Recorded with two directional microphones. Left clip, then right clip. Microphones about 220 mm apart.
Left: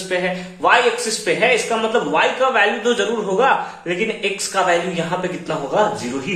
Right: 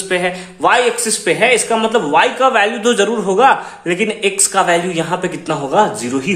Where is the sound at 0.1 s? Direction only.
50° right (ahead or behind).